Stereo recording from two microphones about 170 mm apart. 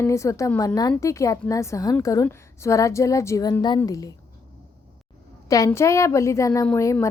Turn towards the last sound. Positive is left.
turn(degrees=15)  # may be behind; listen again after turning